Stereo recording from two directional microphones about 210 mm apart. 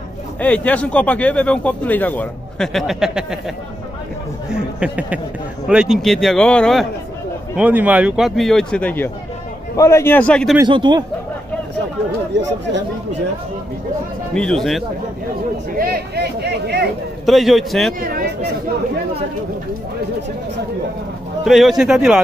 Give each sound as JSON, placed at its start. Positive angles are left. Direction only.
{"t": 0.4, "sound": "speech", "side_deg": 5}
{"t": 4.5, "sound": "a man's voice", "side_deg": -5}
{"t": 10.6, "sound": "speech", "side_deg": -20}
{"t": 14.3, "sound": "a man's voice", "side_deg": 5}
{"t": 15.8, "sound": "speech", "side_deg": -50}
{"t": 17.3, "sound": "a man's voice", "side_deg": 0}
{"t": 18.0, "sound": "chatter", "side_deg": -50}
{"t": 21.5, "sound": "a man's voice", "side_deg": 0}